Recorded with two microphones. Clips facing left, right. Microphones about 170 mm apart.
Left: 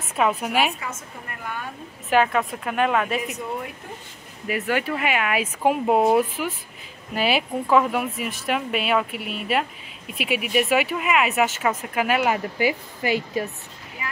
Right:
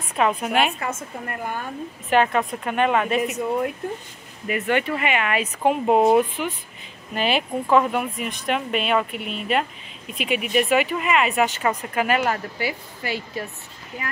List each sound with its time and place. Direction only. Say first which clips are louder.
0.1 s speech: right 1 dB; 5° left (ahead or behind)
0.7 s a woman's voice: right 5 dB; 50° right (ahead or behind)
2.0 s speech: even; centre (ahead or behind)
4.5 s speech: right 2 dB; 5° left (ahead or behind)